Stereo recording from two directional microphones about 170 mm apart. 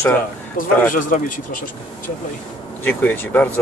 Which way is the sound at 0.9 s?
50° left (ahead or behind).